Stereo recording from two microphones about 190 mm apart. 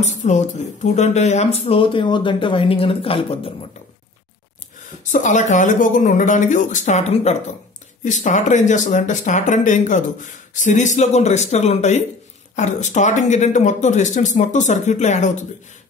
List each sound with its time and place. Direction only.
0.0 s speech: 35° left (ahead or behind)
5.1 s speech: 40° left (ahead or behind)